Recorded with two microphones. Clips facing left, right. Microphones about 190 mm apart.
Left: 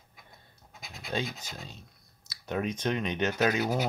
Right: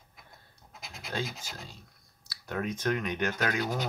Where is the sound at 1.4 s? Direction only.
20° left (ahead or behind).